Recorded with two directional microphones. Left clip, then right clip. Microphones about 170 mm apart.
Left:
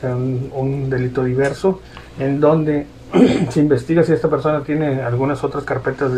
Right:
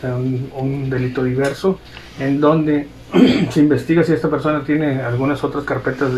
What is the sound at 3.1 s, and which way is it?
Speech, 25° left (ahead or behind).